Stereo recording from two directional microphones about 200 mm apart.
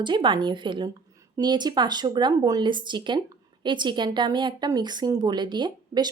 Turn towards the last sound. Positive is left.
turn(degrees=-20)  # may be behind; listen again after turning